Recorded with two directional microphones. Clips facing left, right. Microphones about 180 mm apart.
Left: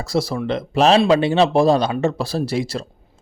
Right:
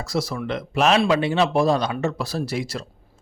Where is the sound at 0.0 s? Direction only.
30° left (ahead or behind).